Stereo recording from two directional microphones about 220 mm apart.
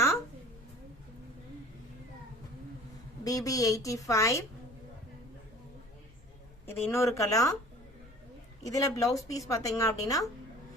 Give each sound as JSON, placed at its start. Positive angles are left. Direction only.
{"t": 3.2, "sound": "a woman's voice", "side_deg": 15}
{"t": 6.7, "sound": "a woman's voice", "side_deg": 10}
{"t": 8.6, "sound": "a woman's voice", "side_deg": 15}